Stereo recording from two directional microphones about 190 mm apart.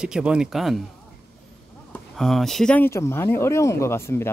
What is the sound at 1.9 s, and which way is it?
Speech, centre (ahead or behind).